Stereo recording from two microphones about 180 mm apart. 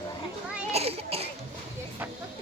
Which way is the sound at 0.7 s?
35° right (ahead or behind).